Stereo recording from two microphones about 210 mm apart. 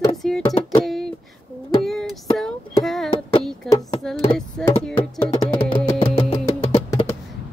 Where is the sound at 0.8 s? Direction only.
Centre (ahead or behind).